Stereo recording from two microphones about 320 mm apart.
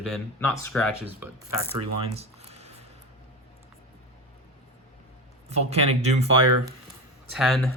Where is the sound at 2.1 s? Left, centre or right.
Centre.